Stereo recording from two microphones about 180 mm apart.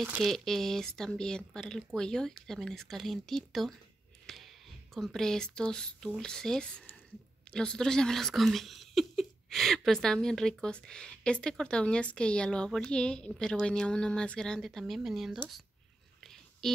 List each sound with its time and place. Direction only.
0.0 s speech: 5° right (ahead or behind)
4.3 s a sound: centre (ahead or behind)
4.9 s speech: centre (ahead or behind)
16.2 s whispering: centre (ahead or behind)